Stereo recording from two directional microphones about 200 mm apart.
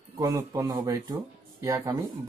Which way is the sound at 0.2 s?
15° right (ahead or behind).